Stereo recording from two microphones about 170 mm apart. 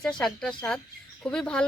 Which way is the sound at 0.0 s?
5° left (ahead or behind).